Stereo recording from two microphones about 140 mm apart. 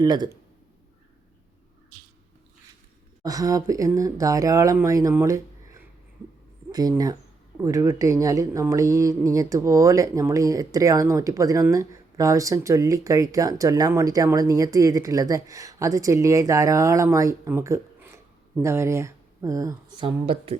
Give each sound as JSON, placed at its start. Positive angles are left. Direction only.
{"t": 0.0, "sound": "speech", "side_deg": -30}
{"t": 3.2, "sound": "speech", "side_deg": -25}
{"t": 5.2, "sound": "a sound", "side_deg": -25}
{"t": 6.7, "sound": "speech", "side_deg": -25}
{"t": 20.0, "sound": "speech", "side_deg": -40}